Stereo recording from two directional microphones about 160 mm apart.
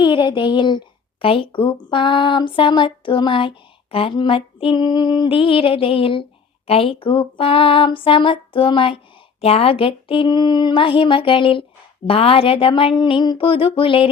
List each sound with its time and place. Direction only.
0.0 s a woman's voice: 30° left (ahead or behind)